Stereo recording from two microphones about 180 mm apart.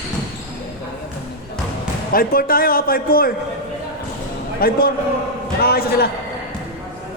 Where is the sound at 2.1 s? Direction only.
55° left (ahead or behind).